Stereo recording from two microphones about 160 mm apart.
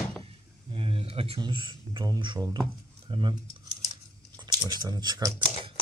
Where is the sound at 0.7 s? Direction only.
35° right (ahead or behind).